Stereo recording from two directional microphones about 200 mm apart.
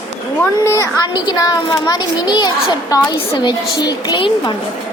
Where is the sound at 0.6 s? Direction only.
15° left (ahead or behind).